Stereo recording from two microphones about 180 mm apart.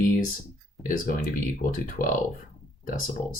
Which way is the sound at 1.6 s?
45° left (ahead or behind).